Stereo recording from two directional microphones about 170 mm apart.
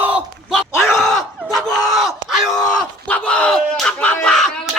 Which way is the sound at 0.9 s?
Centre (ahead or behind).